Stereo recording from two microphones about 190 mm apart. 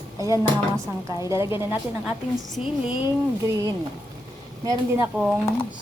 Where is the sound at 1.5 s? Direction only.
10° right (ahead or behind).